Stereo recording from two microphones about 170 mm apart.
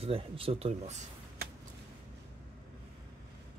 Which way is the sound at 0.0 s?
35° right (ahead or behind).